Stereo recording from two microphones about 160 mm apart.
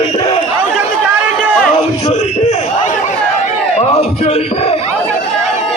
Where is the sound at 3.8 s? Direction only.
40° left (ahead or behind).